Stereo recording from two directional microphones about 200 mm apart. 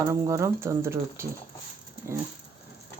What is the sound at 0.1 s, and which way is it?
Speech, 15° right (ahead or behind).